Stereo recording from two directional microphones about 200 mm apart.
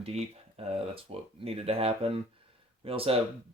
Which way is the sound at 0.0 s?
30° right (ahead or behind).